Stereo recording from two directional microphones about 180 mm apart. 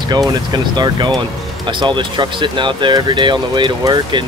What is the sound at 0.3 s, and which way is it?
Speech, 25° right (ahead or behind).